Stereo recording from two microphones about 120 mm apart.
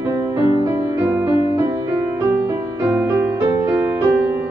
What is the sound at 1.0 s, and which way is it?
Music, 15° right (ahead or behind).